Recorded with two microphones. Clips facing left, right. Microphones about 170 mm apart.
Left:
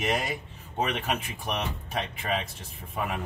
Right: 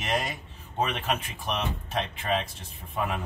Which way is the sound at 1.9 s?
5° left (ahead or behind).